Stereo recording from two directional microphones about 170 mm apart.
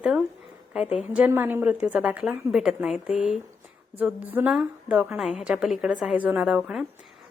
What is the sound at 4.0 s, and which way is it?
A woman's voice, 10° right (ahead or behind).